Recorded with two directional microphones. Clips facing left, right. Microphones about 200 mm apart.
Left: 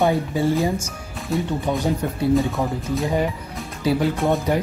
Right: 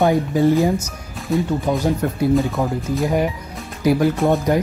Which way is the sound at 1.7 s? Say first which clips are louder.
Right 2 dB; 10° right (ahead or behind).